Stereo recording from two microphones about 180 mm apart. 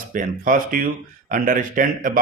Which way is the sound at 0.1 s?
50° right (ahead or behind).